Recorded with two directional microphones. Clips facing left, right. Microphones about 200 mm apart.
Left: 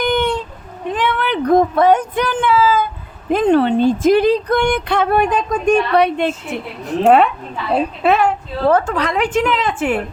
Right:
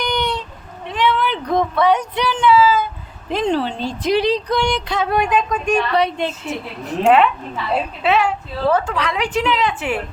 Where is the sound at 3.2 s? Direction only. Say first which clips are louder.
Left 6 dB; 55° left (ahead or behind).